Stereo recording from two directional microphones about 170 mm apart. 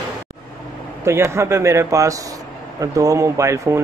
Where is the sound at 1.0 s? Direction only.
15° right (ahead or behind).